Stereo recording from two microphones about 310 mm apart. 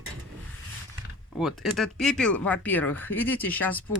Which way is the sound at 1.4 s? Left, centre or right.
Centre.